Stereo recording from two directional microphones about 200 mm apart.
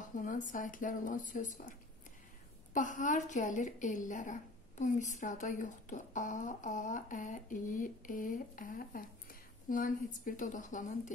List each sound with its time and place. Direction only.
0.1 s a woman's voice: 40° left (ahead or behind)